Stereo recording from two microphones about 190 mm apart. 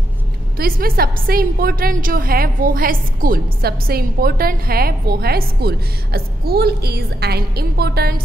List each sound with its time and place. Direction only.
0.6 s a woman's voice: 50° right (ahead or behind)